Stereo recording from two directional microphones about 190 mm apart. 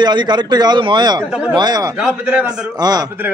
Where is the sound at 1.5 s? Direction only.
20° right (ahead or behind).